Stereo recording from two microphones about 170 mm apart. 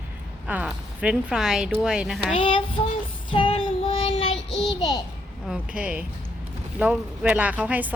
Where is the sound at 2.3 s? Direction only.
30° left (ahead or behind).